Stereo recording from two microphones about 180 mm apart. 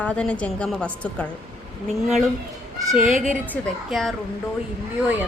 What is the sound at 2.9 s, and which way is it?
A woman's voice, centre (ahead or behind).